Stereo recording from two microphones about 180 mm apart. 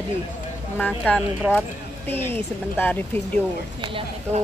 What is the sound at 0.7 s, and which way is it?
Speech, 5° left (ahead or behind).